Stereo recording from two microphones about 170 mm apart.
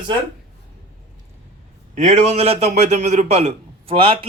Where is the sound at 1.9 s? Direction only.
40° right (ahead or behind).